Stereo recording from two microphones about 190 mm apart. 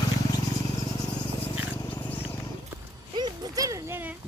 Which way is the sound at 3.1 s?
20° right (ahead or behind).